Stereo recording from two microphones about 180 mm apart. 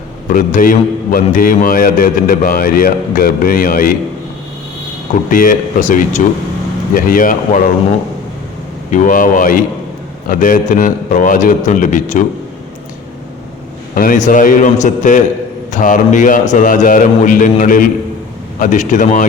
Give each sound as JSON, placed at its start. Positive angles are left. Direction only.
{"t": 0.3, "sound": "a man's voice", "side_deg": 50}
{"t": 5.3, "sound": "a man's voice", "side_deg": 50}
{"t": 8.9, "sound": "a man's voice", "side_deg": 45}
{"t": 13.9, "sound": "a man's voice", "side_deg": 50}